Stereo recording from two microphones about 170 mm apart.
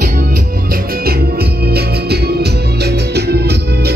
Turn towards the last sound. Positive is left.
turn(degrees=-70)  # may be behind; listen again after turning